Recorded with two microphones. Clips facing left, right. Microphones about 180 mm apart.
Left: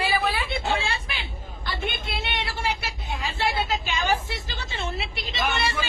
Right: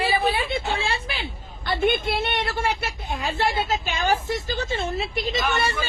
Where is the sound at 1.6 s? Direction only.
55° right (ahead or behind).